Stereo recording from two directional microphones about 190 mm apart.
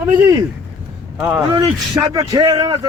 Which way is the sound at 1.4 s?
20° right (ahead or behind).